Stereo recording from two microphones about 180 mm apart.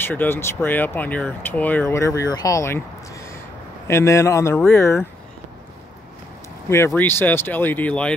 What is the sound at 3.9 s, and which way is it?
Speech, 15° left (ahead or behind).